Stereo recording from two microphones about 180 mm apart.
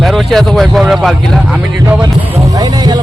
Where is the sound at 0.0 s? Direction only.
Centre (ahead or behind).